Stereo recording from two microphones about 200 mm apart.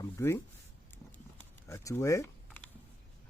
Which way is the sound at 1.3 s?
15° left (ahead or behind).